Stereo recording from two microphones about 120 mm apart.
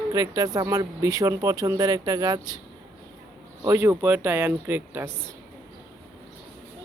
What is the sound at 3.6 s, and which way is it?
Speech, 20° right (ahead or behind).